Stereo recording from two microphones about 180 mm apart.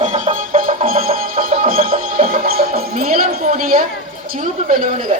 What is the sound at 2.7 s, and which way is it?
Speech, 55° right (ahead or behind).